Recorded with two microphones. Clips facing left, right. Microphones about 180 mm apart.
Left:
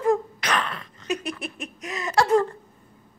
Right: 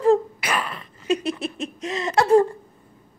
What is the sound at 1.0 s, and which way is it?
Speech, 25° right (ahead or behind).